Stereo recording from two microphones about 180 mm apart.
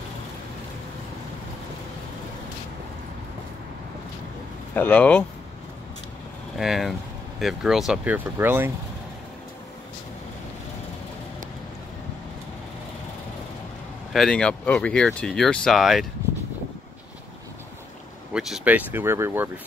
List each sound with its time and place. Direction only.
4.7 s speech: 10° left (ahead or behind)
6.6 s speech: centre (ahead or behind)
14.1 s speech: 5° left (ahead or behind)
18.3 s speech: 5° right (ahead or behind)